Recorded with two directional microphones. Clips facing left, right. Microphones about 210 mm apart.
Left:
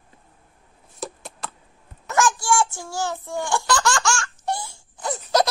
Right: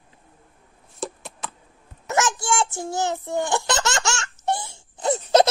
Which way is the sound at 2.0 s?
20° right (ahead or behind).